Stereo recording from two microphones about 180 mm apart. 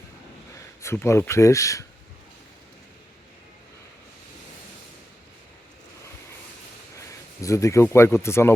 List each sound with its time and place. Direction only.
0.8 s speech: 15° left (ahead or behind)
7.4 s speech: 15° left (ahead or behind)